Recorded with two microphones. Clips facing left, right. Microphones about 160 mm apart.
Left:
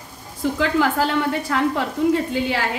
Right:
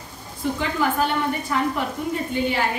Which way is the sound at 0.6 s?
90° left.